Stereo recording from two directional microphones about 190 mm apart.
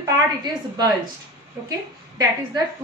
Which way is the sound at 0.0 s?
20° right (ahead or behind).